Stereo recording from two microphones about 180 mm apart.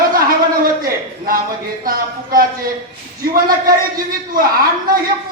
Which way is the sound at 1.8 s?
55° right (ahead or behind).